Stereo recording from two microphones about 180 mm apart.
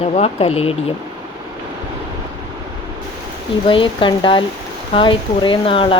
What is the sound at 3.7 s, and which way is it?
Speech, 30° left (ahead or behind).